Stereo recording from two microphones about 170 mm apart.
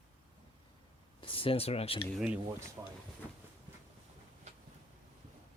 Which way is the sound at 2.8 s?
15° right (ahead or behind).